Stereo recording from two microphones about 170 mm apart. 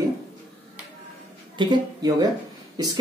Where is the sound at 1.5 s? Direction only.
25° right (ahead or behind).